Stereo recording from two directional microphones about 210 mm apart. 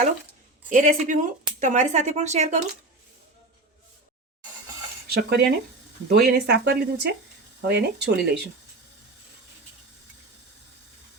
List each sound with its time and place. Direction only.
0.7 s speech: 35° right (ahead or behind)
5.0 s speech: 50° right (ahead or behind)